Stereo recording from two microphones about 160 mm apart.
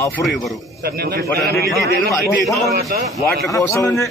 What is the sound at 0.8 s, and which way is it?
Speech, 75° right (ahead or behind).